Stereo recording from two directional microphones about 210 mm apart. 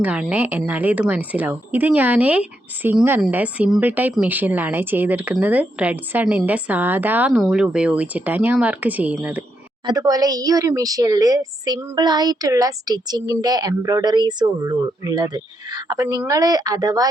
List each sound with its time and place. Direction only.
0.0 s speech: 5° right (ahead or behind)